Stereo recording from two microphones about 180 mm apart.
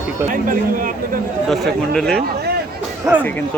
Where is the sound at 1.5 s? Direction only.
Centre (ahead or behind).